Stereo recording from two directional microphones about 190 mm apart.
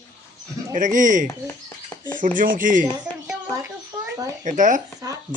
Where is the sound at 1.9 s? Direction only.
20° left (ahead or behind).